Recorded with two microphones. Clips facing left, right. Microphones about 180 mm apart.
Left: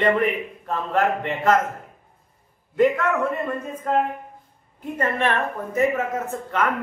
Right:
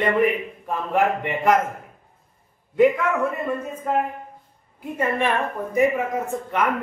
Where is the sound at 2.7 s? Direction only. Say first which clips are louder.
Right 1 dB; 10° right (ahead or behind).